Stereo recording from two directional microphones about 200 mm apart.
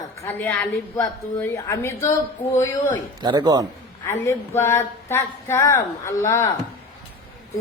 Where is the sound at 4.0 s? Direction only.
10° left (ahead or behind).